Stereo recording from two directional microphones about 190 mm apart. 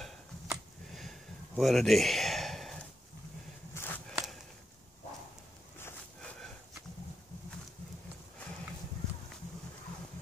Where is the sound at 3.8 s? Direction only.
15° left (ahead or behind).